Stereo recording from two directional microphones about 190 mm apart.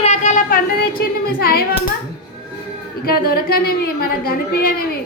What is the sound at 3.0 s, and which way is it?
A woman's voice, 50° left (ahead or behind).